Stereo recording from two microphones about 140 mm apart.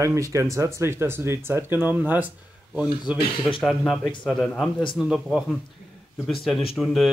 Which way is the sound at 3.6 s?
5° left (ahead or behind).